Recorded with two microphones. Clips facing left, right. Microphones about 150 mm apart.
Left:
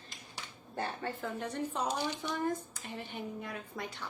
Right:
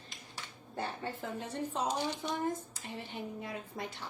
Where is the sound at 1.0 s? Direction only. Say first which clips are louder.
Left 2 dB; 20° right (ahead or behind).